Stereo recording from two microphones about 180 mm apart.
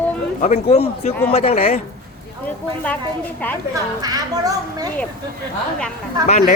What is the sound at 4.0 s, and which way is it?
Speech, 20° right (ahead or behind).